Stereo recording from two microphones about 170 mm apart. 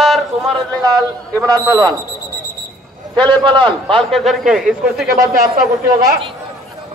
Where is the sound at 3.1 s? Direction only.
30° right (ahead or behind).